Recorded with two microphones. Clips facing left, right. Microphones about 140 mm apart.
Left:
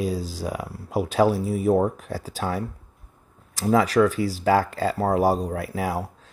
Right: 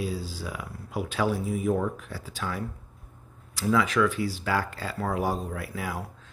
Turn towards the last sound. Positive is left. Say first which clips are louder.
# left 7 dB
turn(degrees=45)  # may be behind; listen again after turning